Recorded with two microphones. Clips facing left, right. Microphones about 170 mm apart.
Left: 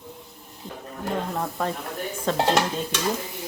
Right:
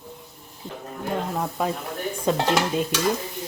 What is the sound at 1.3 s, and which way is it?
Speech, centre (ahead or behind).